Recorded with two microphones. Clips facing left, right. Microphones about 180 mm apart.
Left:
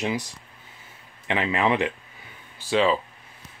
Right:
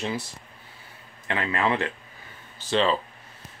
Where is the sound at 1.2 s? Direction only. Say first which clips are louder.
Left 2 dB; 20° left (ahead or behind).